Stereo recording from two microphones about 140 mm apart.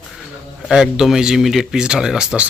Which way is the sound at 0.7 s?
5° right (ahead or behind).